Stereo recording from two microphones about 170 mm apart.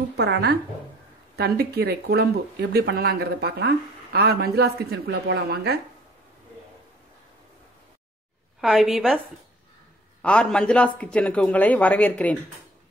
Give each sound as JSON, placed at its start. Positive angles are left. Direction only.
{"t": 0.2, "sound": "speech", "side_deg": -75}
{"t": 8.5, "sound": "a woman's voice", "side_deg": 0}
{"t": 10.2, "sound": "a man's voice", "side_deg": 5}